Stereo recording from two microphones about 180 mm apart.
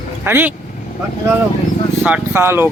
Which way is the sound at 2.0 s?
10° right (ahead or behind).